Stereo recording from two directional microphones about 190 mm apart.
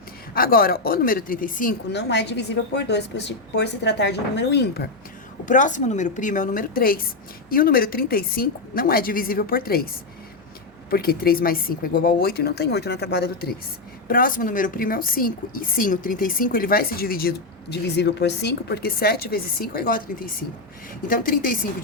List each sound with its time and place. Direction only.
0.3 s a woman's voice: 50° left (ahead or behind)
1.9 s a woman's voice: 65° left (ahead or behind)
5.5 s a woman's voice: 40° left (ahead or behind); by 13.5 s 60° left (ahead or behind)
14.1 s a woman's voice: 45° left (ahead or behind)